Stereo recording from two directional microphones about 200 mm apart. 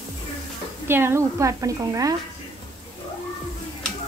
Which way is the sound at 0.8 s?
10° right (ahead or behind).